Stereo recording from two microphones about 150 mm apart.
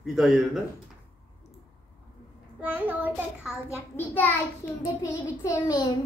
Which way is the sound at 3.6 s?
15° left (ahead or behind).